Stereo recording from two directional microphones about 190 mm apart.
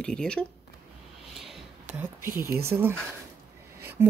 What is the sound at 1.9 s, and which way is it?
Speech, 10° right (ahead or behind).